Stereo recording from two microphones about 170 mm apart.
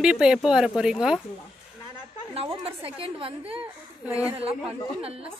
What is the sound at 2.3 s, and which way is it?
A woman's voice, 35° right (ahead or behind).